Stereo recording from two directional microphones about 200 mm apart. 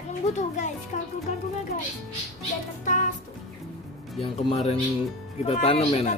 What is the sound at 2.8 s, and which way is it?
Speech, 40° left (ahead or behind).